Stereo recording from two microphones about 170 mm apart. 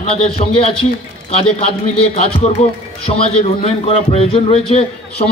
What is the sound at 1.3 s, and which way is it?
A man's voice, 35° left (ahead or behind).